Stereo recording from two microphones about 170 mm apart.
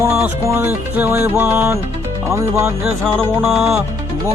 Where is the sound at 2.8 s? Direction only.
Centre (ahead or behind).